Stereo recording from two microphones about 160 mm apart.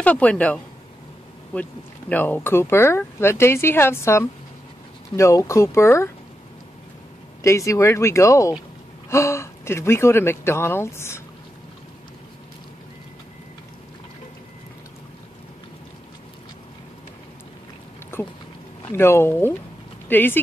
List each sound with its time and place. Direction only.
0.0 s speech: 10° left (ahead or behind)
7.4 s speech: 20° left (ahead or behind)
18.1 s speech: 15° left (ahead or behind)